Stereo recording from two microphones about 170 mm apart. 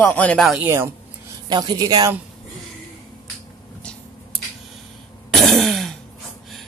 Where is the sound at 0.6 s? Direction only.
15° right (ahead or behind).